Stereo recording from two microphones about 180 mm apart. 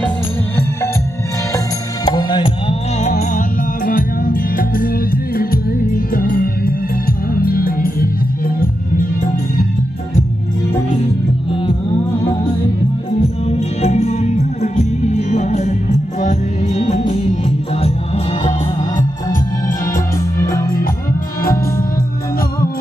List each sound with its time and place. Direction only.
2.0 s music: 25° left (ahead or behind)
3.0 s music: 40° left (ahead or behind)
13.5 s music: 35° left (ahead or behind)
18.8 s music: 20° left (ahead or behind)
21.4 s music: 55° left (ahead or behind)